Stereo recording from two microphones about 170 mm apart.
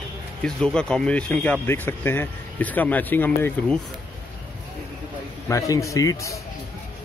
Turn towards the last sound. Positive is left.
turn(degrees=20)  # may be behind; listen again after turning